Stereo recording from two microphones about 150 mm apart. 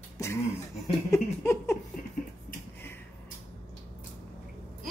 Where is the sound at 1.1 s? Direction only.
20° left (ahead or behind).